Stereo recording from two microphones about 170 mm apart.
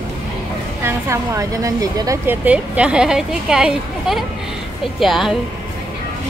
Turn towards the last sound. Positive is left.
turn(degrees=0)  # may be behind; listen again after turning